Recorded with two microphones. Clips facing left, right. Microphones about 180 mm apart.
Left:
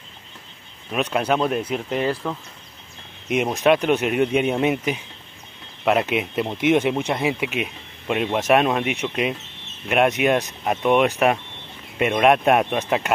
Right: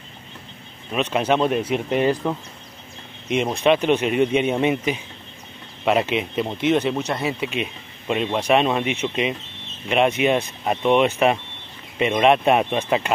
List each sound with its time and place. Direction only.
0.9 s speech: centre (ahead or behind)
3.3 s speech: 10° left (ahead or behind)